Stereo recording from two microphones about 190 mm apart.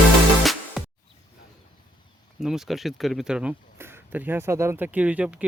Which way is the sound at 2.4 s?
Centre (ahead or behind).